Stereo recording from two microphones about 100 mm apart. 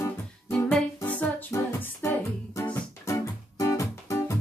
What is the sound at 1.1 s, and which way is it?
Music, 15° left (ahead or behind).